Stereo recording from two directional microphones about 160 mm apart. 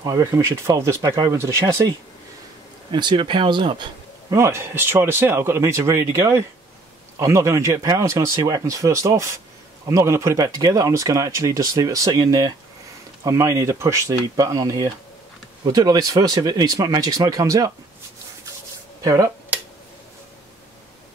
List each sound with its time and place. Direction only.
0.0 s speech: 20° right (ahead or behind)
2.9 s speech: 30° right (ahead or behind)
19.0 s speech: 20° right (ahead or behind)